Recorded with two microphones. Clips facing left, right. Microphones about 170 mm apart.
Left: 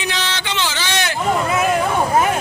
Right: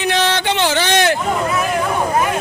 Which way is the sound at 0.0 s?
55° right (ahead or behind).